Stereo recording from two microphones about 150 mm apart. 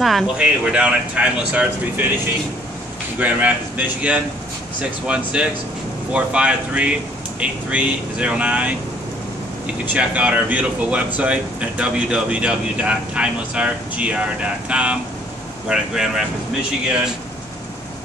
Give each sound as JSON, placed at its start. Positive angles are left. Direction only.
{"t": 0.0, "sound": "speech", "side_deg": -5}
{"t": 3.2, "sound": "speech", "side_deg": -10}
{"t": 9.9, "sound": "speech", "side_deg": -10}